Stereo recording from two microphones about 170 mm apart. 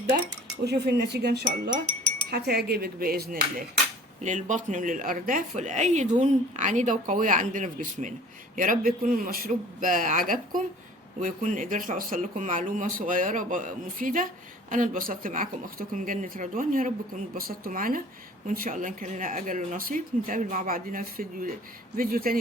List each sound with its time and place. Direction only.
0.6 s speech: 75° right (ahead or behind)
4.2 s a woman's voice: 45° right (ahead or behind)